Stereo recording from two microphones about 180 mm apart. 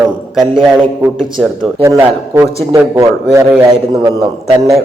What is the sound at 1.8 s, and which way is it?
Speech, 15° right (ahead or behind).